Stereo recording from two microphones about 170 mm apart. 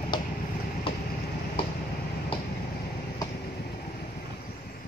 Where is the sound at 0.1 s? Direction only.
25° left (ahead or behind).